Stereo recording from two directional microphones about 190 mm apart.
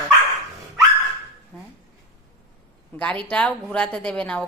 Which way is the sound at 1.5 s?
10° left (ahead or behind).